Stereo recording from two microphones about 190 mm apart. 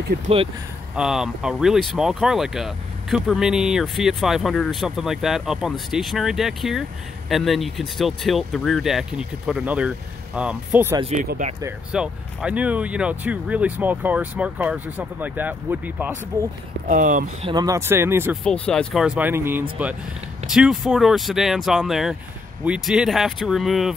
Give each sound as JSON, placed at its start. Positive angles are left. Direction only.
{"t": 0.9, "sound": "speech", "side_deg": -5}
{"t": 11.2, "sound": "speech", "side_deg": -45}
{"t": 11.9, "sound": "speech", "side_deg": -5}
{"t": 16.8, "sound": "speech", "side_deg": -45}
{"t": 17.5, "sound": "speech", "side_deg": -20}
{"t": 18.3, "sound": "speech", "side_deg": 5}